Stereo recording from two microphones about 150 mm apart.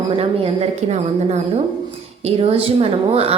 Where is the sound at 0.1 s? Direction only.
40° right (ahead or behind).